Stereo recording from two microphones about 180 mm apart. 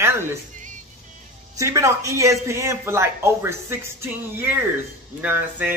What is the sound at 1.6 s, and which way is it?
Speech, 15° right (ahead or behind).